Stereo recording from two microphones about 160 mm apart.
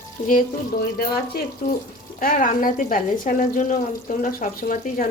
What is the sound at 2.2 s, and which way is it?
Speech, 60° left (ahead or behind).